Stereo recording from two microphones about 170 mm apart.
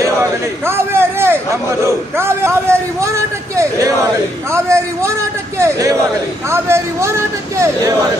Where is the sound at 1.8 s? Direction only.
15° right (ahead or behind).